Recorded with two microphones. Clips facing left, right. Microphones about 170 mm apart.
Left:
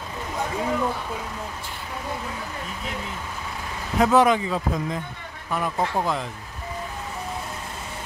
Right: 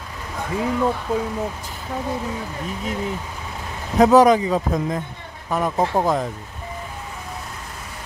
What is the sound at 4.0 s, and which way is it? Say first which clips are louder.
Speech: right 5 dB; 40° right (ahead or behind).